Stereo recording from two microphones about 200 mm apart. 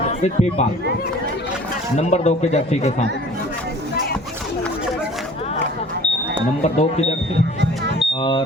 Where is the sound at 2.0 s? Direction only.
35° left (ahead or behind).